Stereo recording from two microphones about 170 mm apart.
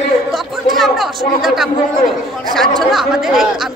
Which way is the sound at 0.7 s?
Centre (ahead or behind).